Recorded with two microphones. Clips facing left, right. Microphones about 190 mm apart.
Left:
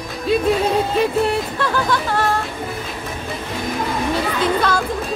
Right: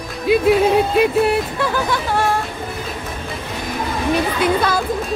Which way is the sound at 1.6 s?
10° right (ahead or behind).